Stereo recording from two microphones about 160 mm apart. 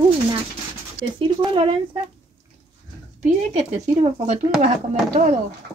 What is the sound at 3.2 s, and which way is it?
Speech, 45° right (ahead or behind).